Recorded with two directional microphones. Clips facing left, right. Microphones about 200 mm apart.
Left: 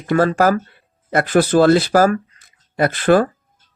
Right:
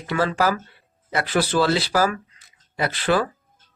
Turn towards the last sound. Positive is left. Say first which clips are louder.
# left 7 dB
turn(degrees=50)  # may be behind; listen again after turning